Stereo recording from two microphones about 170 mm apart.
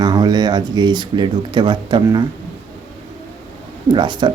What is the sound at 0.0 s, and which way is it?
Speech, 25° right (ahead or behind).